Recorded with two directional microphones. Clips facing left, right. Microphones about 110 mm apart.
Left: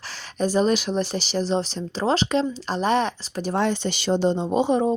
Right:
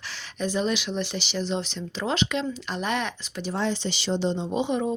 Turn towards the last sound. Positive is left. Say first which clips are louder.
# left 5 dB
turn(degrees=35)  # may be behind; listen again after turning